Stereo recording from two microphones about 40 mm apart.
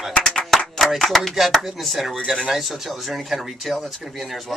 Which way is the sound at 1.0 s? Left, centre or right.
Centre.